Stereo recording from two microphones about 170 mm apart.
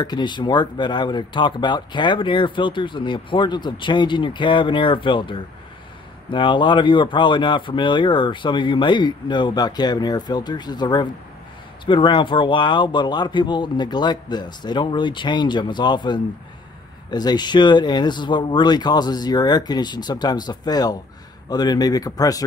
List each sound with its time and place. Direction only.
0.0 s speech: 25° left (ahead or behind)